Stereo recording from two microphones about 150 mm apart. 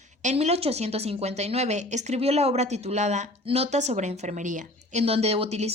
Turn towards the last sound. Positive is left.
turn(degrees=-45)  # may be behind; listen again after turning